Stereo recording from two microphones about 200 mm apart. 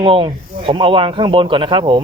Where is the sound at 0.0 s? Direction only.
25° right (ahead or behind).